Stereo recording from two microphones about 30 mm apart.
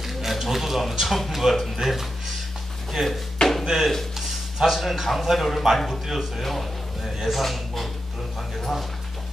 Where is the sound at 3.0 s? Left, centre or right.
Right; by 7.9 s centre.